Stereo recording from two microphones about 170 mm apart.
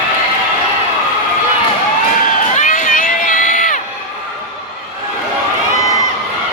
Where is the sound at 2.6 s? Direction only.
50° left (ahead or behind).